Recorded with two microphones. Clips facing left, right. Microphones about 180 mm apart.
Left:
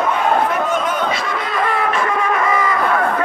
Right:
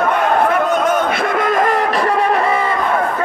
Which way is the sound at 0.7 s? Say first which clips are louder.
Right 4 dB; 45° right (ahead or behind).